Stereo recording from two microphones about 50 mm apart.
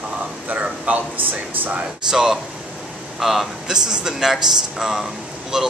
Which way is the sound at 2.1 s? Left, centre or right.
Centre.